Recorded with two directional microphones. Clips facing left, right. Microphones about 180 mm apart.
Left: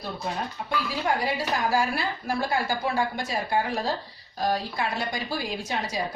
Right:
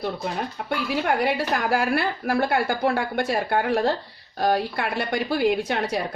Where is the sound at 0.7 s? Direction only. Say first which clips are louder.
Right 3 dB; 60° right (ahead or behind).